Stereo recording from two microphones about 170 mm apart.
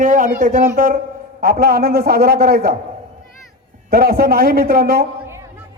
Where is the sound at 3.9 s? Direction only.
65° right (ahead or behind).